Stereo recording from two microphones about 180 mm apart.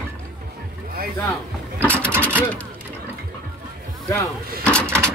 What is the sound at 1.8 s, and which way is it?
Mechanisms, 10° left (ahead or behind).